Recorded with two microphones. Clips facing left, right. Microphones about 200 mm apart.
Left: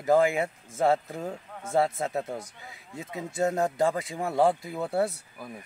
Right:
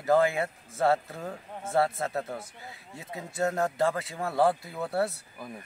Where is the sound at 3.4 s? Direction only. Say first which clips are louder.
Left 2 dB; 15° left (ahead or behind).